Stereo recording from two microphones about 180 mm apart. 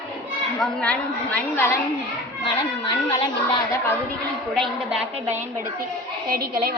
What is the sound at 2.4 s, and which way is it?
Speech, 25° left (ahead or behind).